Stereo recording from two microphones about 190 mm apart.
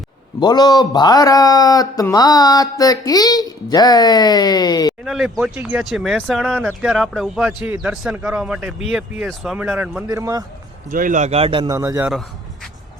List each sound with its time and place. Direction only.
0.3 s a man's voice: 20° left (ahead or behind)
5.0 s speech: centre (ahead or behind); by 10.4 s 15° right (ahead or behind)
10.9 s a man's voice: 45° right (ahead or behind); by 11.8 s 25° right (ahead or behind)
11.8 s speech: 10° right (ahead or behind)